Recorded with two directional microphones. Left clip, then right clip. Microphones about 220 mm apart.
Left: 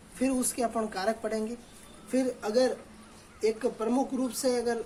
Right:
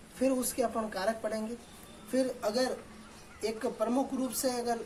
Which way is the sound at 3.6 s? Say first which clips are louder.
Left 2 dB; 20° left (ahead or behind).